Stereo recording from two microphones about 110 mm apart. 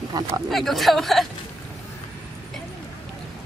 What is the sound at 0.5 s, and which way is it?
Speech, centre (ahead or behind).